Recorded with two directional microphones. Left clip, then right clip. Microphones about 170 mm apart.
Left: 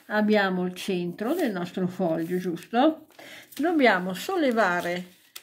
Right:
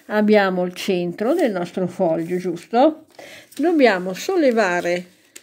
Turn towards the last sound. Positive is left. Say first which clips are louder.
# right 5 dB
turn(degrees=-40)  # may be behind; listen again after turning